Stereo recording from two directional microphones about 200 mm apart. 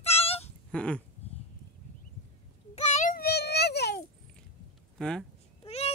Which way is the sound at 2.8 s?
35° left (ahead or behind).